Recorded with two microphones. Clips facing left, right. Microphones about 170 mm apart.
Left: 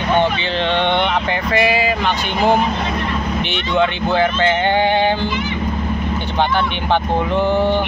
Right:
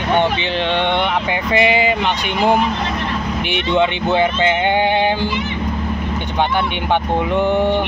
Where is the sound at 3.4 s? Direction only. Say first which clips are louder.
Right 2 dB; 20° right (ahead or behind).